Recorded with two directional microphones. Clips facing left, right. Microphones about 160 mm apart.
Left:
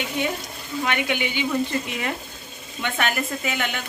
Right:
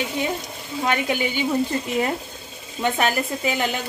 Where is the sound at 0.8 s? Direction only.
35° right (ahead or behind).